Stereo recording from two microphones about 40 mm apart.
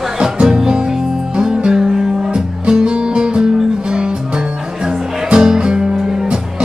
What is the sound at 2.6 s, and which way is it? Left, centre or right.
Music, right.